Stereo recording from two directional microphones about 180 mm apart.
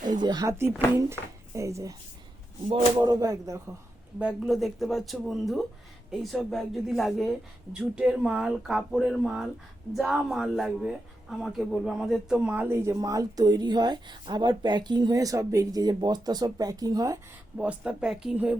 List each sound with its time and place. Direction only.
0.2 s speech: 25° right (ahead or behind)
3.0 s speech: 20° right (ahead or behind)
4.2 s a woman's voice: 5° right (ahead or behind); by 17.2 s 20° right (ahead or behind)
17.6 s a woman's voice: 5° right (ahead or behind)